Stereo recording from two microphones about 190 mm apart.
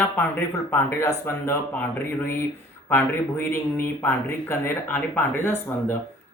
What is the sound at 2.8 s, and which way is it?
Speech, 15° left (ahead or behind).